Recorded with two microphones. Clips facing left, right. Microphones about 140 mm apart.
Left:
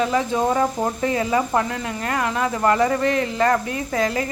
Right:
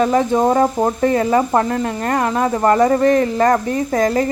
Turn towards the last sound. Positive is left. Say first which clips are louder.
# right 6 dB
turn(degrees=-40)  # may be behind; listen again after turning